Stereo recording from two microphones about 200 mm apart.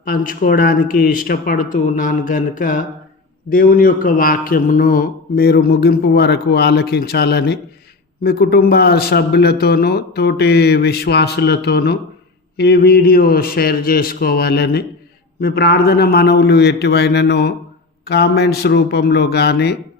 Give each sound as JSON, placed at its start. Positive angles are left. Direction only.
{"t": 0.0, "sound": "a man's voice", "side_deg": 45}